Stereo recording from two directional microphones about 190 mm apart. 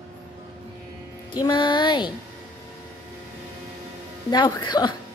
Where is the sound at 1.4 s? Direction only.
25° left (ahead or behind).